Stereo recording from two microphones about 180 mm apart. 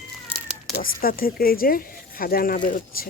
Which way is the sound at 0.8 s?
55° left (ahead or behind).